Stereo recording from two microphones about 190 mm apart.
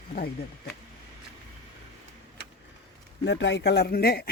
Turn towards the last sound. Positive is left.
turn(degrees=55)  # may be behind; listen again after turning